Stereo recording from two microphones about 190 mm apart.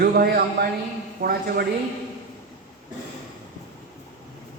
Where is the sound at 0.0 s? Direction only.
55° right (ahead or behind).